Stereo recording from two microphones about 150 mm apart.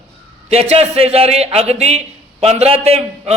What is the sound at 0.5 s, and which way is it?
A man's voice, 45° right (ahead or behind).